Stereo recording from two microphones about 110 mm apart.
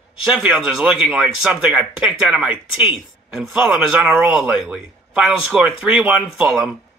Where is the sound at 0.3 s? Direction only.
10° right (ahead or behind).